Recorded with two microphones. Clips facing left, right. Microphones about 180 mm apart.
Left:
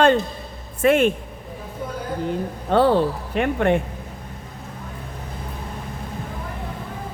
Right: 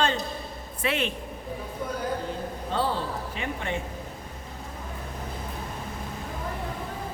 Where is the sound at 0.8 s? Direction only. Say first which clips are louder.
Left 12 dB; 50° left (ahead or behind).